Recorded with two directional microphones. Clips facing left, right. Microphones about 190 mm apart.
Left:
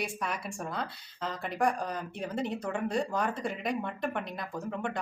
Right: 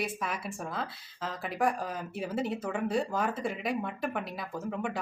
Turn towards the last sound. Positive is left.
turn(degrees=-5)  # may be behind; listen again after turning